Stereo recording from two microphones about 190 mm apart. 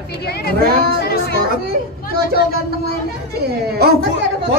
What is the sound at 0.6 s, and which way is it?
Speech, 55° right (ahead or behind).